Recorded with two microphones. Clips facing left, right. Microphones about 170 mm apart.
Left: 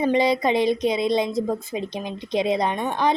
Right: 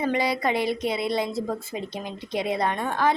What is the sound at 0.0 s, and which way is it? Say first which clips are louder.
A woman's voice: left 5 dB; 20° left (ahead or behind).